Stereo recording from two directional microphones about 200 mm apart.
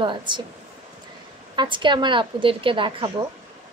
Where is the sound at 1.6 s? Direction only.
25° right (ahead or behind).